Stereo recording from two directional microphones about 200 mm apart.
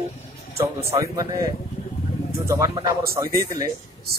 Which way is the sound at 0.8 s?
15° right (ahead or behind).